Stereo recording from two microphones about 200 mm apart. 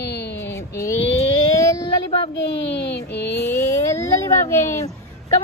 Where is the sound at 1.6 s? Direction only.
15° left (ahead or behind).